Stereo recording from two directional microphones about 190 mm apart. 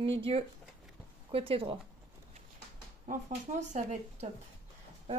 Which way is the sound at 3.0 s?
40° right (ahead or behind).